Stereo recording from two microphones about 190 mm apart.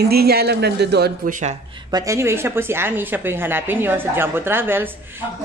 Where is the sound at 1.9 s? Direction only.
20° right (ahead or behind).